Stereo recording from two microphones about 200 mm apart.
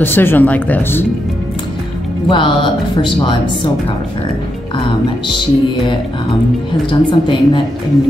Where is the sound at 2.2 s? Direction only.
25° left (ahead or behind).